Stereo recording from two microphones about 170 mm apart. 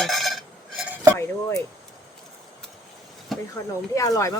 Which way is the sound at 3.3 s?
Centre (ahead or behind).